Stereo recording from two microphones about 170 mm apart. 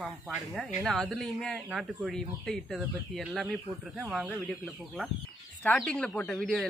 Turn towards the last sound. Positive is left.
turn(degrees=5)  # may be behind; listen again after turning